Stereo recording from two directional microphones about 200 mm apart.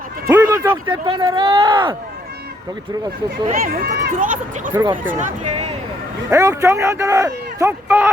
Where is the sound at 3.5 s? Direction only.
45° right (ahead or behind).